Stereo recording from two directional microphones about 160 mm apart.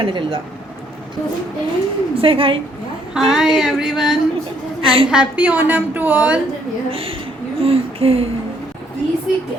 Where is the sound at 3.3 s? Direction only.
5° right (ahead or behind).